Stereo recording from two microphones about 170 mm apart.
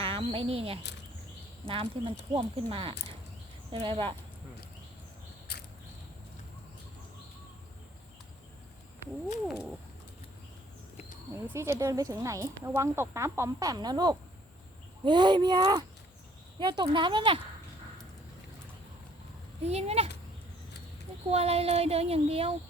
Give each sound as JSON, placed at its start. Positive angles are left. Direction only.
{"t": 0.0, "sound": "speech", "side_deg": -35}
{"t": 9.5, "sound": "a sound", "side_deg": -5}
{"t": 11.4, "sound": "speech", "side_deg": -15}
{"t": 19.6, "sound": "speech", "side_deg": -40}
{"t": 21.2, "sound": "speech", "side_deg": -35}